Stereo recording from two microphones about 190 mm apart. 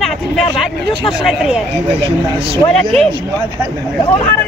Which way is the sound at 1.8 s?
30° right (ahead or behind).